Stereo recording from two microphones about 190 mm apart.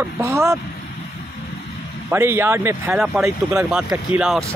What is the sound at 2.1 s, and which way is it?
Speech, 10° right (ahead or behind).